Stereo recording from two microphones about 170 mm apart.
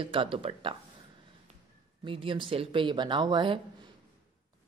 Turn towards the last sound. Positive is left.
turn(degrees=-30)  # may be behind; listen again after turning